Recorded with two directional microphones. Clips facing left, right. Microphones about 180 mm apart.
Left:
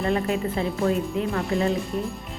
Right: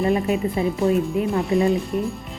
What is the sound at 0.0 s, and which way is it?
A woman's voice, 15° right (ahead or behind).